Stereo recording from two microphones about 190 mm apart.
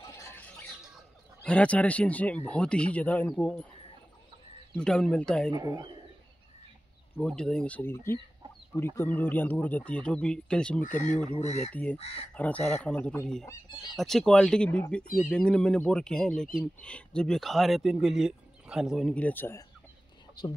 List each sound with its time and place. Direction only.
0.0 s a sound: 15° left (ahead or behind)
1.4 s a man's voice: 5° left (ahead or behind)
4.7 s speech: 5° left (ahead or behind)
5.5 s speech: 20° right (ahead or behind)
7.2 s a man's voice: 5° left (ahead or behind)
11.3 s speech: 35° left (ahead or behind)
11.7 s a man's voice: 10° left (ahead or behind)
12.0 s speech: 30° left (ahead or behind)
12.4 s a man's voice: 5° left (ahead or behind)
15.0 s speech: 45° left (ahead or behind)
15.3 s speech: 5° left (ahead or behind)